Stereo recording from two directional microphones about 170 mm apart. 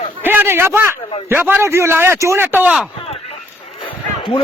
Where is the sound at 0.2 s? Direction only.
10° right (ahead or behind).